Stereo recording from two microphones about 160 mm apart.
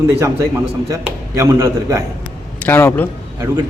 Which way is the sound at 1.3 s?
20° right (ahead or behind).